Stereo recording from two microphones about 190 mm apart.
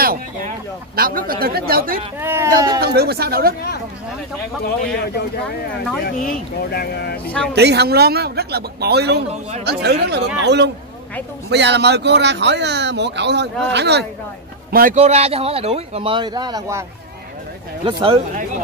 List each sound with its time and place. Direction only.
0.0 s a sound: 50° right (ahead or behind)
0.9 s speech: 50° right (ahead or behind)
2.1 s speech: 10° right (ahead or behind)
2.8 s speech: 55° right (ahead or behind)
6.7 s speech: 55° left (ahead or behind)
7.5 s speech: 60° right (ahead or behind)
14.7 s speech: 50° right (ahead or behind)
15.0 s speech: 35° right (ahead or behind); by 16.8 s 20° right (ahead or behind)
17.8 s speech: 30° right (ahead or behind)